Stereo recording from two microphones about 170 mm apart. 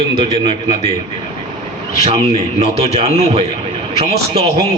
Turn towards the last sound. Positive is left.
turn(degrees=-40)  # may be behind; listen again after turning